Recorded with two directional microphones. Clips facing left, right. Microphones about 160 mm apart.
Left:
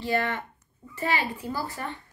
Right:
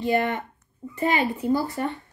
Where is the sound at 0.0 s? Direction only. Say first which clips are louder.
Right 4 dB; 20° right (ahead or behind).